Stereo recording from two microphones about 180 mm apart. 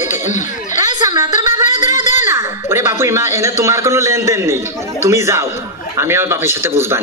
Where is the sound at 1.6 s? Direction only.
45° left (ahead or behind).